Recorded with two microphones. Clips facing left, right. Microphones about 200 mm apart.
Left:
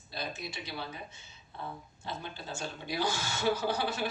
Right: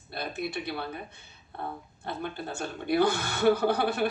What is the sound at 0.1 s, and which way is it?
Speech, 55° right (ahead or behind).